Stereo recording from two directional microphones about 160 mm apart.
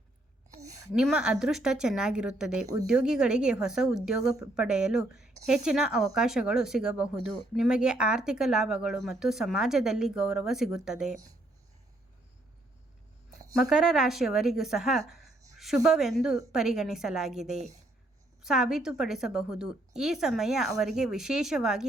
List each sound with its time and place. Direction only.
0.5 s a sound: 45° right (ahead or behind)
0.9 s speech: 5° right (ahead or behind)
13.6 s speech: 5° right (ahead or behind)
18.4 s speech: 5° right (ahead or behind)